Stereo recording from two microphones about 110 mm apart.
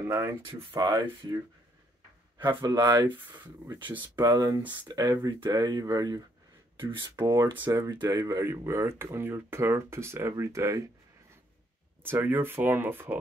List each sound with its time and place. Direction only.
0.1 s speech: 25° right (ahead or behind)
0.7 s speech: 35° right (ahead or behind)
2.3 s speech: 40° right (ahead or behind)
12.0 s speech: 20° right (ahead or behind)